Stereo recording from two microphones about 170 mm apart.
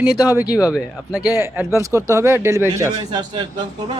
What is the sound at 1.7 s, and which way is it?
Speech, 20° right (ahead or behind).